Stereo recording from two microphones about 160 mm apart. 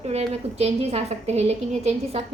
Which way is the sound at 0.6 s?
40° right (ahead or behind).